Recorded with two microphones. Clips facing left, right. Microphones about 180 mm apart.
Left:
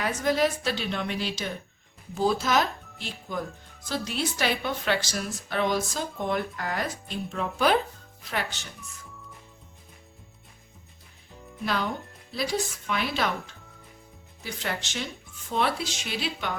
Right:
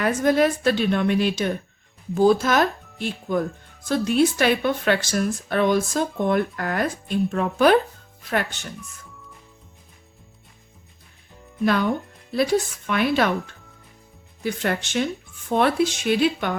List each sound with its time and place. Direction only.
0.0 s a woman's voice: 55° right (ahead or behind)
11.6 s a woman's voice: 55° right (ahead or behind)